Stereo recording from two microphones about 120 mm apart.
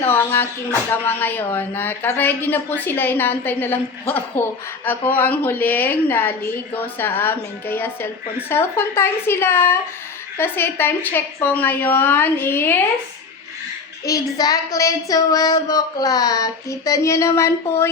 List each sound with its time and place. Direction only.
0.0 s a woman's voice: 20° left (ahead or behind)
14.0 s speech: 30° left (ahead or behind)